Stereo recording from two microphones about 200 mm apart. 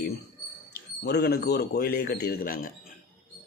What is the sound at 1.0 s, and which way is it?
Speech, 55° left (ahead or behind).